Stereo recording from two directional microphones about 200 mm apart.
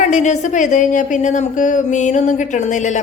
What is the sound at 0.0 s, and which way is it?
A woman's voice, 35° left (ahead or behind).